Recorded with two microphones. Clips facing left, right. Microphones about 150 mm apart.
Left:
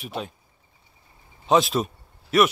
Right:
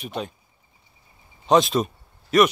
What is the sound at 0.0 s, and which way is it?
Speech, 5° left (ahead or behind).